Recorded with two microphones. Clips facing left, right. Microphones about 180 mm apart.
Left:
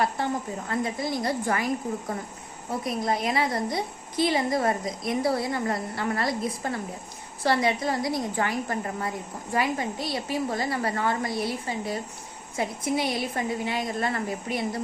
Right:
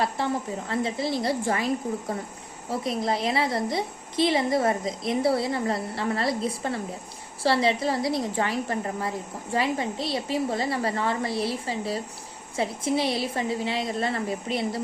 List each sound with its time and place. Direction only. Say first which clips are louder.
0.2 s a woman's voice: right 1 dB; 25° right (ahead or behind)